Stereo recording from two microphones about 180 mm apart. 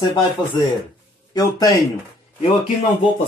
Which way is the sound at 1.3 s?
20° left (ahead or behind).